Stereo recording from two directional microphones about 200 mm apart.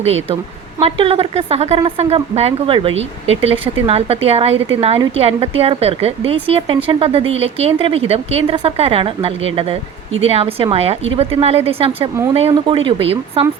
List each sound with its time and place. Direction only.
0.8 s speech: 25° right (ahead or behind)